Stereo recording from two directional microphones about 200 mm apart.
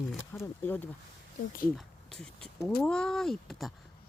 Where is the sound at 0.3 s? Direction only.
10° left (ahead or behind).